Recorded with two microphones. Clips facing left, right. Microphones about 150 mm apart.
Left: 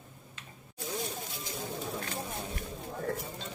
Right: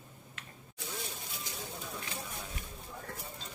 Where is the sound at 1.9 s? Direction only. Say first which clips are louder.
Left 5 dB; 45° left (ahead or behind).